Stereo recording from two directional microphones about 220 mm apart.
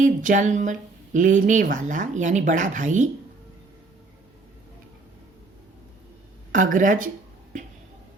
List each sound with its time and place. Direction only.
0.0 s speech: 35° right (ahead or behind)
6.5 s speech: 35° right (ahead or behind)